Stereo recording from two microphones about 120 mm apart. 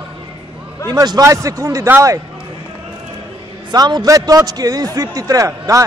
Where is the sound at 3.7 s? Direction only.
35° right (ahead or behind).